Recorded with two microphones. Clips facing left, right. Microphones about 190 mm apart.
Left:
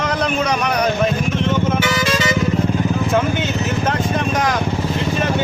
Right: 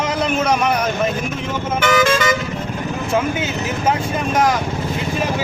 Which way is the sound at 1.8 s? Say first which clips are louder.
Right 3 dB; 50° right (ahead or behind).